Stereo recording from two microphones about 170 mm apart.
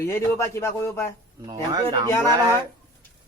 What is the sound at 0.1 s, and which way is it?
Speech, 15° left (ahead or behind).